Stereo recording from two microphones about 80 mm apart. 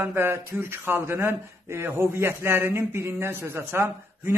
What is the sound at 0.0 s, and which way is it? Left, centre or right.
A man's voice, right.